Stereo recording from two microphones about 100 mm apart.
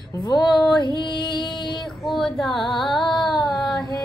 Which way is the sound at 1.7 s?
Centre (ahead or behind).